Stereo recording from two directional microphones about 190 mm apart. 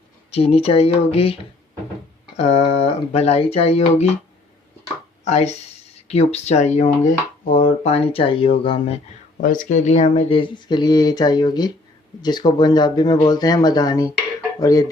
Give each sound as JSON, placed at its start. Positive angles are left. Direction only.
{"t": 0.3, "sound": "speech", "side_deg": 30}
{"t": 2.4, "sound": "speech", "side_deg": 35}
{"t": 5.2, "sound": "speech", "side_deg": 35}
{"t": 9.4, "sound": "speech", "side_deg": 45}